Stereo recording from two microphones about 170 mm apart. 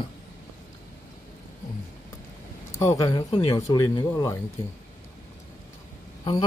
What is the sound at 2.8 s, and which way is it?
Speech, 20° left (ahead or behind).